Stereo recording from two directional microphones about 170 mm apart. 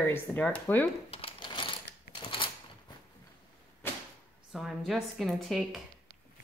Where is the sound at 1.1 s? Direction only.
30° left (ahead or behind).